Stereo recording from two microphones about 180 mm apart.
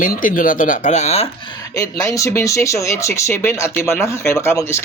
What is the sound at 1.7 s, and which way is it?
Speech, 15° left (ahead or behind).